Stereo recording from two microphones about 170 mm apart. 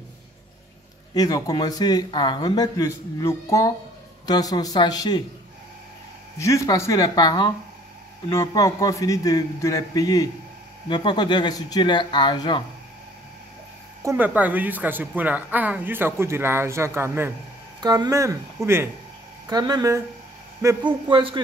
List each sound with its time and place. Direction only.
1.1 s speech: 20° left (ahead or behind)
6.3 s speech: 20° left (ahead or behind)
14.0 s a woman's voice: 10° right (ahead or behind)
21.1 s speech: 30° right (ahead or behind)